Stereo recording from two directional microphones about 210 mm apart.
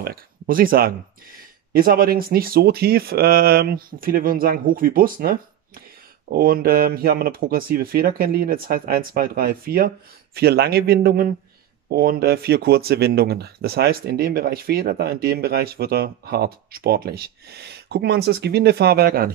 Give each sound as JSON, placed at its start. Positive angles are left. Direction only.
{"t": 0.0, "sound": "speech", "side_deg": -45}